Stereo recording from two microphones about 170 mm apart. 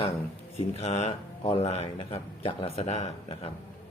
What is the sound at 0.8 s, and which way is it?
Speech, 40° left (ahead or behind).